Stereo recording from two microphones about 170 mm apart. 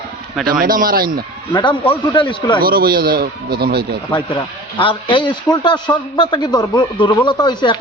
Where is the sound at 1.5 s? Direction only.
25° left (ahead or behind).